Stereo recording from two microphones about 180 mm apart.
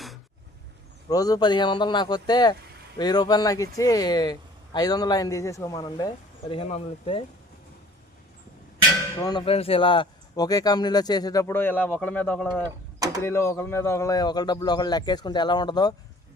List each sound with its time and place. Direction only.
1.1 s speech: 20° left (ahead or behind)
9.1 s speech: 25° left (ahead or behind)